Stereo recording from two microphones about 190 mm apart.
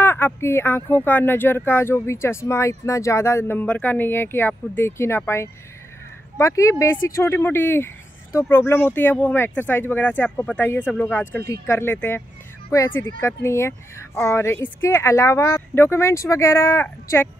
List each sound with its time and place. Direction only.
0.0 s speech: 10° left (ahead or behind)